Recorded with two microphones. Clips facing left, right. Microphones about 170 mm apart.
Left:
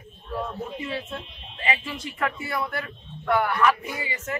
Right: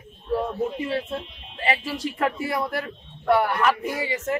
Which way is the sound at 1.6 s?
35° right (ahead or behind).